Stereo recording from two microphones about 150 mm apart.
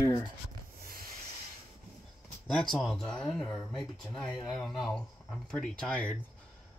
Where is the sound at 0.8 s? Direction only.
75° right (ahead or behind).